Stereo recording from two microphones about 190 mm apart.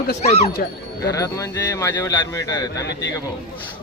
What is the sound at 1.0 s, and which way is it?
Speech, 15° left (ahead or behind).